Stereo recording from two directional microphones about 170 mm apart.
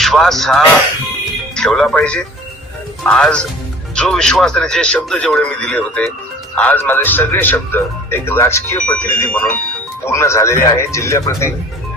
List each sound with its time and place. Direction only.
0.0 s a man's voice: centre (ahead or behind)